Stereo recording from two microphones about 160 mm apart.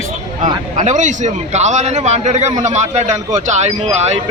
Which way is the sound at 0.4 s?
50° right (ahead or behind).